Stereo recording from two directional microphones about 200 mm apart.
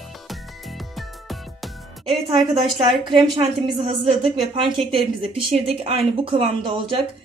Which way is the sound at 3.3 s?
25° right (ahead or behind).